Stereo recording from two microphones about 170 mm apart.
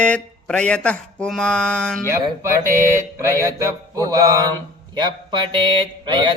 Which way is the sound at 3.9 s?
20° right (ahead or behind).